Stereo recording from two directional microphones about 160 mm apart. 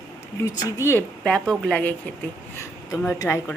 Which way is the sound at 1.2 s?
5° left (ahead or behind).